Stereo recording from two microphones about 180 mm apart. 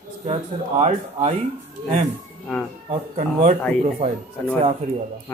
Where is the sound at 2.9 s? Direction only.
35° right (ahead or behind).